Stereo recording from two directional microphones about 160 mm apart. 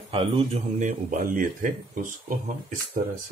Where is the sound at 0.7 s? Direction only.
50° right (ahead or behind).